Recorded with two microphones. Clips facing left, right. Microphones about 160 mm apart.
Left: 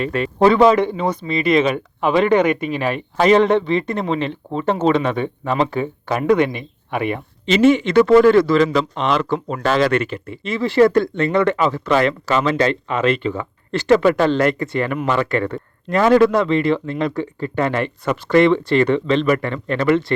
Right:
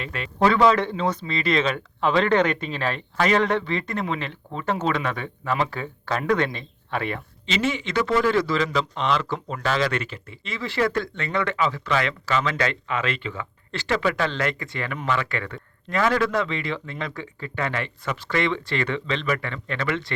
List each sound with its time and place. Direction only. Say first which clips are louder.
0.0 s speech: left 11 dB; 45° left (ahead or behind)
0.3 s a man's voice: left 6 dB; 20° left (ahead or behind)
7.4 s a man's voice: left 12 dB; 55° left (ahead or behind)
12.5 s speech: left 7 dB; 30° left (ahead or behind)
13.2 s speech: left 9 dB; 40° left (ahead or behind)